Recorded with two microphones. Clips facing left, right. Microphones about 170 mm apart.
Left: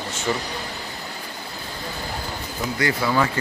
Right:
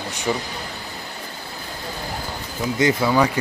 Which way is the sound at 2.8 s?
20° right (ahead or behind).